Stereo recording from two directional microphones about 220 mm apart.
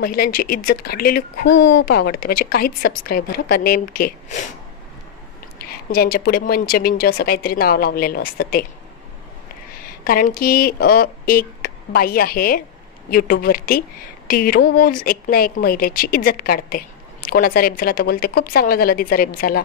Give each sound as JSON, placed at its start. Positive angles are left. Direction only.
{"t": 0.0, "sound": "speech", "side_deg": 40}
{"t": 5.6, "sound": "speech", "side_deg": 45}
{"t": 9.8, "sound": "speech", "side_deg": 40}